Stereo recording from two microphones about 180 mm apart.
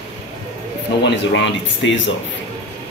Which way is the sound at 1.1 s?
85° left.